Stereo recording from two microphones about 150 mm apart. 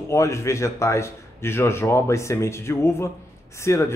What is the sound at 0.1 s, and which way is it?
Speech, 20° left (ahead or behind).